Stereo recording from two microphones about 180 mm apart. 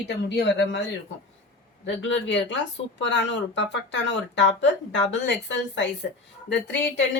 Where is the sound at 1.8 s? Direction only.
90° left.